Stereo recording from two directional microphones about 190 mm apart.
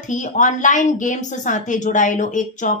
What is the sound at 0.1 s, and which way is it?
A woman's voice, 40° left (ahead or behind).